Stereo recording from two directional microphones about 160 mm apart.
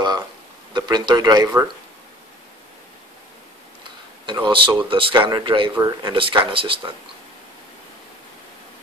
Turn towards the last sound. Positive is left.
turn(degrees=-30)  # may be behind; listen again after turning